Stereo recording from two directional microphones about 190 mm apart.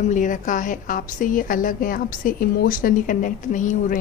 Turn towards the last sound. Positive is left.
turn(degrees=40)  # may be behind; listen again after turning